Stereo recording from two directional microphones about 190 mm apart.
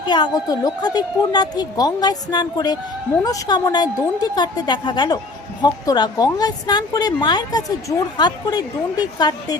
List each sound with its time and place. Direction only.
0.0 s a woman's voice: 25° left (ahead or behind)